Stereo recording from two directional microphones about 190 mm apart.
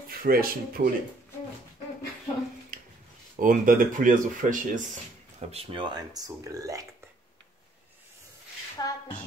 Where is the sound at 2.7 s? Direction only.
45° right (ahead or behind).